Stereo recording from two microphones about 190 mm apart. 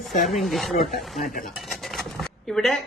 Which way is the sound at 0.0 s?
Centre (ahead or behind).